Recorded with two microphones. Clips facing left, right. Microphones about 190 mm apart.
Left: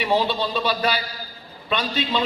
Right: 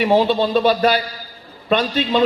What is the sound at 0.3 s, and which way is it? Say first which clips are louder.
A man's voice: right 8 dB; 45° right (ahead or behind).